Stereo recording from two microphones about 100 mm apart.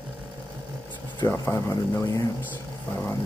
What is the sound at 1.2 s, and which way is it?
Speech, 30° left (ahead or behind).